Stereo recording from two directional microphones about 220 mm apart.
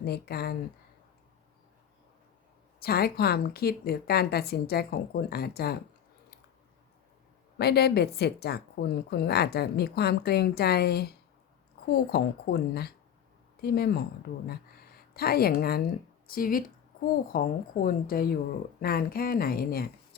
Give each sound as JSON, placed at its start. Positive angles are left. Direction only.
{"t": 0.0, "sound": "a woman's voice", "side_deg": 45}
{"t": 2.8, "sound": "a woman's voice", "side_deg": 45}
{"t": 7.6, "sound": "a woman's voice", "side_deg": 45}